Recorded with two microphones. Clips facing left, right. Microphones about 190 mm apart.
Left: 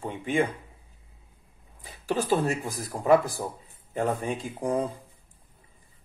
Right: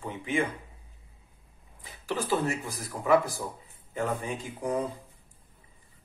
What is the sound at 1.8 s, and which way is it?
Speech, 45° left (ahead or behind).